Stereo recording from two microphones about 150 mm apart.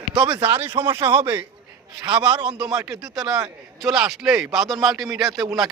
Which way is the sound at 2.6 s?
5° right (ahead or behind).